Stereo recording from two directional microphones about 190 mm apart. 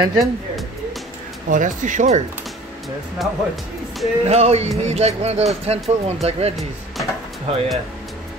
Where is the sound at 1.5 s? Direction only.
45° right (ahead or behind).